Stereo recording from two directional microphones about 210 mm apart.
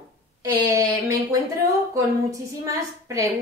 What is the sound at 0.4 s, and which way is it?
Speech, 15° right (ahead or behind).